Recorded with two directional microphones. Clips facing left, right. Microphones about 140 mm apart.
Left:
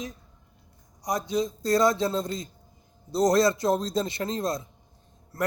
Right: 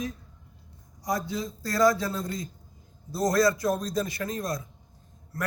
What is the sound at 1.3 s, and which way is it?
A man's voice, 20° left (ahead or behind).